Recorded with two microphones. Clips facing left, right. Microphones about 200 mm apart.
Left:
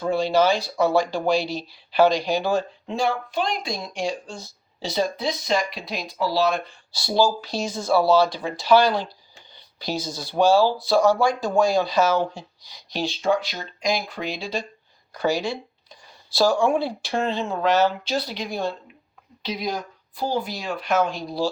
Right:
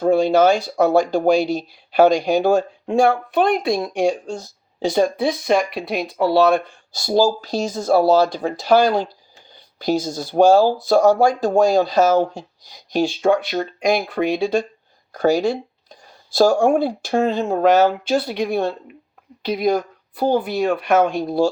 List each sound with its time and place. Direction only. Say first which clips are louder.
0.0 s speech: right 6 dB; 45° right (ahead or behind)